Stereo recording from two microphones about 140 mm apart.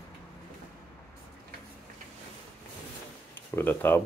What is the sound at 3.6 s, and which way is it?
Speech, 15° left (ahead or behind).